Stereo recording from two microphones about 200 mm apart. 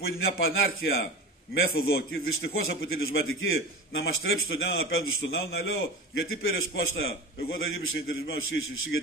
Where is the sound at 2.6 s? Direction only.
80° left.